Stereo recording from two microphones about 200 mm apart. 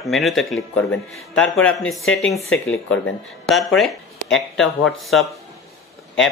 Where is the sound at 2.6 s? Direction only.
75° left (ahead or behind).